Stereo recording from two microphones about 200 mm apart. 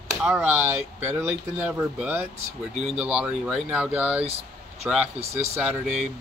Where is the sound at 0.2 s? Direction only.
5° right (ahead or behind).